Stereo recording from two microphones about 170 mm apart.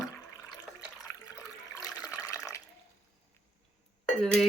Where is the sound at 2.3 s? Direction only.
15° left (ahead or behind).